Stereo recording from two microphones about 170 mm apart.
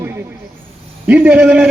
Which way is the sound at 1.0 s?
10° right (ahead or behind).